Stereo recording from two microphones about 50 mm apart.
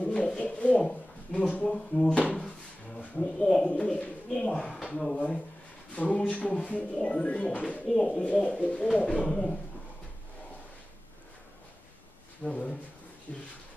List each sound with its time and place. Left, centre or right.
0.1 s a sound: centre
0.4 s a sound: left
1.3 s speech: left
7.8 s speech: centre
8.2 s speech: left
8.8 s speech: centre
12.4 s speech: left